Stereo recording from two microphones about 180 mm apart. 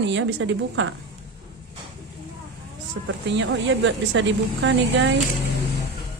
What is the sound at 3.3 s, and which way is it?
A woman's voice, 85° right.